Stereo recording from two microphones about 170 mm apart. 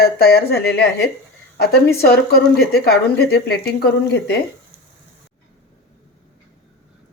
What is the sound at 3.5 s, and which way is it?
Speech, 70° left (ahead or behind).